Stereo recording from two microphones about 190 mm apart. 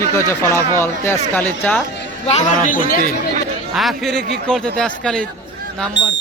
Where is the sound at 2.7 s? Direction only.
50° left (ahead or behind).